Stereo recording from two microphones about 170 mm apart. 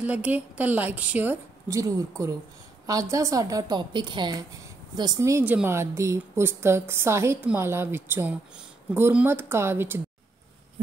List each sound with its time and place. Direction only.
0.0 s a woman's voice: 10° right (ahead or behind)